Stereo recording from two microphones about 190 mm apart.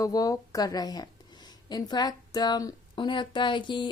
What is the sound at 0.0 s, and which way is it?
A woman's voice, 20° left (ahead or behind).